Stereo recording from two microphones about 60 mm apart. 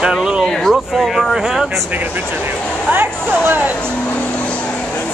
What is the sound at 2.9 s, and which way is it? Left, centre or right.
Speech, right.